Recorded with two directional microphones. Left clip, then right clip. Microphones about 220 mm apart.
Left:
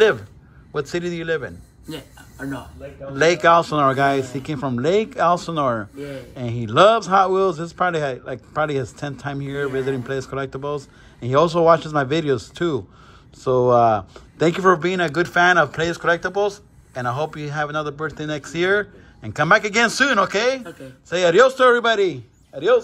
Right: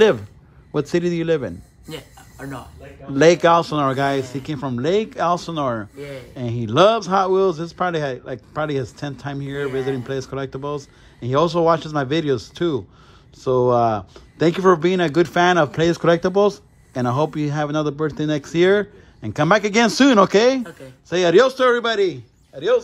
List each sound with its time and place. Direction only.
0.7 s a man's voice: 30° right (ahead or behind)
1.9 s speech: centre (ahead or behind)
3.2 s a man's voice: 25° right (ahead or behind)
5.9 s speech: centre (ahead or behind)
6.3 s a man's voice: 20° right (ahead or behind)